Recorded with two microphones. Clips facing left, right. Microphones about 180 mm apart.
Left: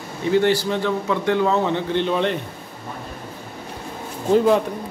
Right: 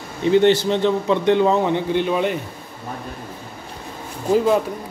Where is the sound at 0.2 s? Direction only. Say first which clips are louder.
Right 3 dB; 20° right (ahead or behind).